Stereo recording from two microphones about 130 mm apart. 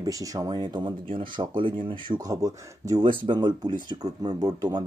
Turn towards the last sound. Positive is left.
turn(degrees=-30)  # may be behind; listen again after turning